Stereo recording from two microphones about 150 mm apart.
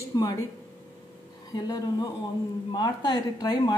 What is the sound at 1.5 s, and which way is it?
A woman's voice, 25° left (ahead or behind).